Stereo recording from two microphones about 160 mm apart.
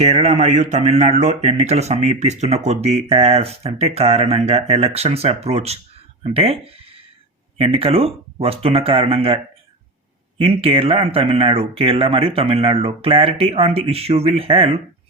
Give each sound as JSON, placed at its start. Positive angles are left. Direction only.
{"t": 0.0, "sound": "speech", "side_deg": -40}
{"t": 7.6, "sound": "speech", "side_deg": -35}